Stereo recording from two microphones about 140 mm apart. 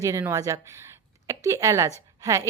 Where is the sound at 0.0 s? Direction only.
20° right (ahead or behind).